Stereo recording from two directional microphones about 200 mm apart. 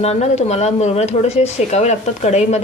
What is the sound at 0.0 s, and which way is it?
Speech, 35° left (ahead or behind).